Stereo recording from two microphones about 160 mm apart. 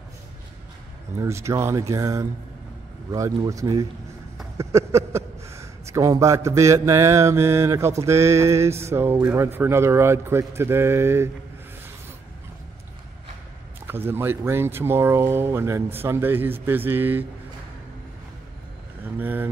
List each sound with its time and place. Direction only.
1.2 s a man's voice: 20° right (ahead or behind)
13.8 s a man's voice: 15° right (ahead or behind)
19.1 s a man's voice: 10° right (ahead or behind)